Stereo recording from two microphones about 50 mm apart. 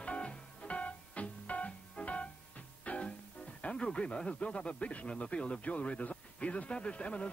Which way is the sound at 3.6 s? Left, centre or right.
Centre.